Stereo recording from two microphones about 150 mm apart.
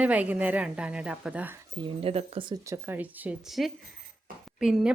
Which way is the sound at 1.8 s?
40° right (ahead or behind).